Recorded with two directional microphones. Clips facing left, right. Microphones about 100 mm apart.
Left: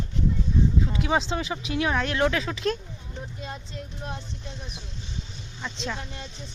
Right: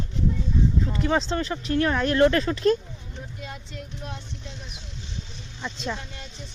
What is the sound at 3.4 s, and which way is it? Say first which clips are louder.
Vehicle: left 1 dB; 30° left (ahead or behind).